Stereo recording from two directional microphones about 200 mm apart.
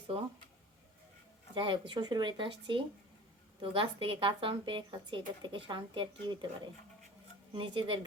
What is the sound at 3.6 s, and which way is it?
A woman's voice, 25° right (ahead or behind).